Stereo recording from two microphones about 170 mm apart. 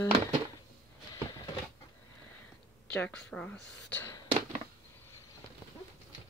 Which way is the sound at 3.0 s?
5° left (ahead or behind).